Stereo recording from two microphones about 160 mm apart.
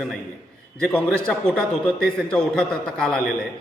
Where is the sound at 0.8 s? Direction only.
5° left (ahead or behind).